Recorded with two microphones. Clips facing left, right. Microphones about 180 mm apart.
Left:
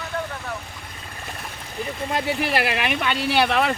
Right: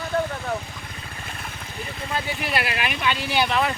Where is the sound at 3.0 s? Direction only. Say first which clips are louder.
Left 1 dB; 60° left (ahead or behind).